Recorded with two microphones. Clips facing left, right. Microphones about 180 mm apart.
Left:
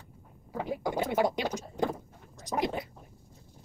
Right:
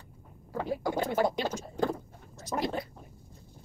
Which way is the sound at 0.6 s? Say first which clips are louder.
Right 1 dB; 20° left (ahead or behind).